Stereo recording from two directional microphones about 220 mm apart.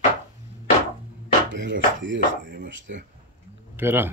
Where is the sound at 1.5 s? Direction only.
55° right (ahead or behind).